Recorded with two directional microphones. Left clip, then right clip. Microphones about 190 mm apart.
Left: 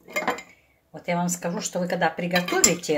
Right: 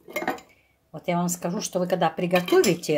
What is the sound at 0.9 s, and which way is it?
Speech, 50° right (ahead or behind).